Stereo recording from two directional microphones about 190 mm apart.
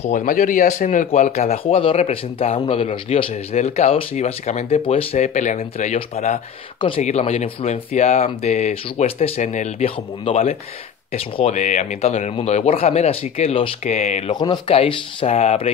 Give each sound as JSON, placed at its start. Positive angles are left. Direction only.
{"t": 0.0, "sound": "speech", "side_deg": 40}
{"t": 14.3, "sound": "speech", "side_deg": 25}